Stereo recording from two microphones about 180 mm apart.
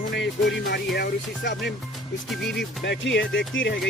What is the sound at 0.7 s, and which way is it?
Speech, 65° left (ahead or behind).